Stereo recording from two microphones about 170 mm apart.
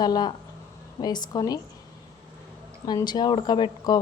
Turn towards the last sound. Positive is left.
turn(degrees=25)  # may be behind; listen again after turning